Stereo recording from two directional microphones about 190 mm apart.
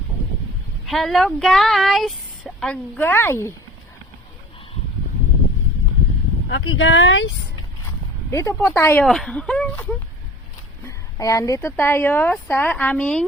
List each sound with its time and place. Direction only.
0.9 s a woman's voice: centre (ahead or behind)
6.5 s speech: 90° left
8.3 s a woman's voice: 15° left (ahead or behind)
10.8 s speech: 20° left (ahead or behind)